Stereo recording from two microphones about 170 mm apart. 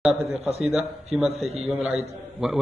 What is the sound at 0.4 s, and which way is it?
Speech, 40° right (ahead or behind).